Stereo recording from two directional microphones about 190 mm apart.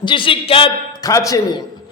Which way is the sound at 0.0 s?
25° left (ahead or behind).